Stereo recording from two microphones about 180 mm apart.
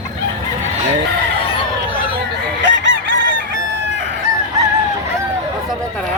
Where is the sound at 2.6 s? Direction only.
85° right.